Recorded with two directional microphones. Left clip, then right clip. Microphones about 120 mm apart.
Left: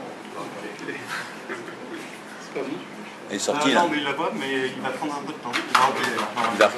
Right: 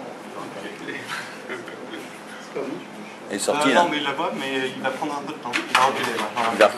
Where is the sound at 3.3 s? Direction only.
Centre (ahead or behind).